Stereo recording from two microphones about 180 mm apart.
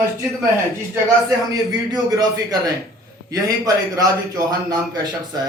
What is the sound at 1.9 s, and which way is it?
A man's voice, 20° right (ahead or behind).